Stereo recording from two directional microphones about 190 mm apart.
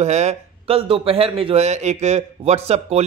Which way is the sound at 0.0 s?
35° right (ahead or behind).